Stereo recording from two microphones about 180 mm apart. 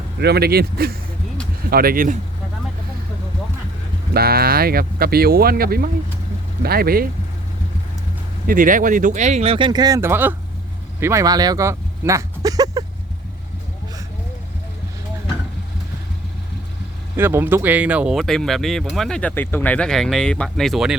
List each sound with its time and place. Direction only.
0.2 s speech: 65° right (ahead or behind)
4.1 s speech: 60° right (ahead or behind)
8.4 s speech: 50° right (ahead or behind); by 10.3 s 10° right (ahead or behind)
11.0 s a sound: 15° right (ahead or behind)
17.2 s speech: 15° right (ahead or behind)